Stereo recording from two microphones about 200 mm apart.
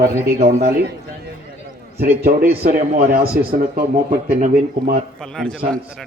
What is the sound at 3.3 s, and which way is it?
Speech, 50° right (ahead or behind).